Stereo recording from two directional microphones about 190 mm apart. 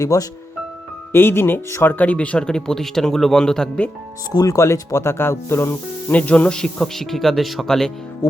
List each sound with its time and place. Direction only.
0.0 s speech: 15° left (ahead or behind)
4.4 s speech: 15° left (ahead or behind)